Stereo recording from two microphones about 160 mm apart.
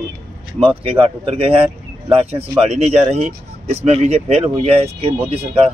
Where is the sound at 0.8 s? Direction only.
35° right (ahead or behind).